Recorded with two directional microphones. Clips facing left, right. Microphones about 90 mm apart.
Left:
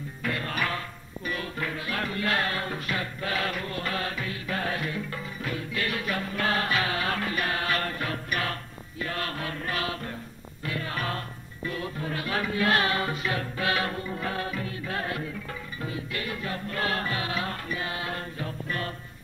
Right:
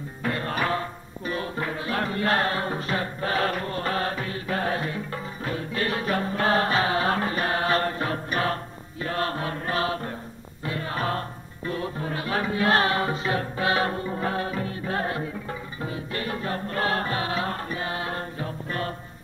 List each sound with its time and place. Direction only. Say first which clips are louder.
0.2 s music: right 3 dB; 30° right (ahead or behind)